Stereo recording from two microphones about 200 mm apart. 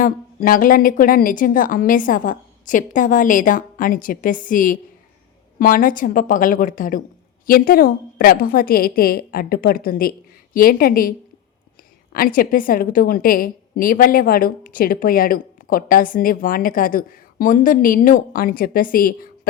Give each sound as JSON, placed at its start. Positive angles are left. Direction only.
{"t": 0.0, "sound": "a woman's voice", "side_deg": 45}
{"t": 12.1, "sound": "a woman's voice", "side_deg": 45}